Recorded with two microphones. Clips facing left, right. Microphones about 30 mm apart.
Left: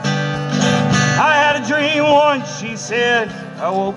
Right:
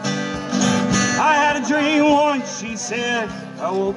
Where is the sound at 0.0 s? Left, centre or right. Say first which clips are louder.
Left 4 dB; centre.